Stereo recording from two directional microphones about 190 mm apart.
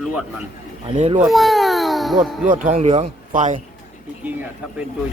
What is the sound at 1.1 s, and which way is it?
Speech, centre (ahead or behind).